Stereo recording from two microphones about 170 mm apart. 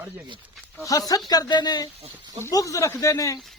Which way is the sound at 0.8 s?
20° left (ahead or behind).